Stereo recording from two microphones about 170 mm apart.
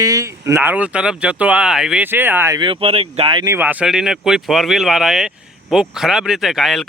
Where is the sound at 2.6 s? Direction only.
30° right (ahead or behind).